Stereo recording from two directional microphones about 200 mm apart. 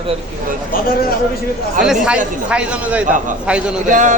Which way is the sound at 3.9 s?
40° right (ahead or behind).